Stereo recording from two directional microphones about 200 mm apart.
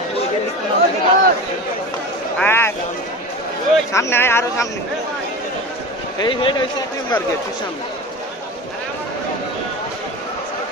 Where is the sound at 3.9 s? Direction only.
15° left (ahead or behind).